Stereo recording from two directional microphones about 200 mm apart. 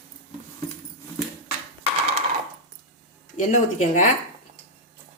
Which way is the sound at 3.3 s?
40° left (ahead or behind).